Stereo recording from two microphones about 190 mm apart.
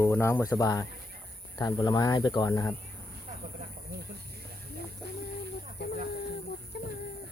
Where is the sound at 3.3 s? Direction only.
45° right (ahead or behind).